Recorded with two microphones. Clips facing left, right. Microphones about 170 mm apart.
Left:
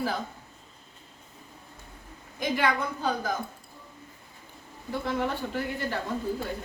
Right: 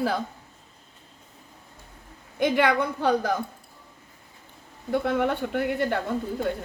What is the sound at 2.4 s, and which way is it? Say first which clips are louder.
Speech: right 5 dB; 60° right (ahead or behind).